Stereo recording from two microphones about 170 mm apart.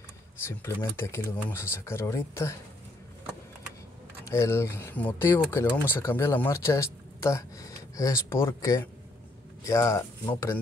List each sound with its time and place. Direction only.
0.5 s speech: 15° left (ahead or behind)
4.2 s speech: 15° left (ahead or behind)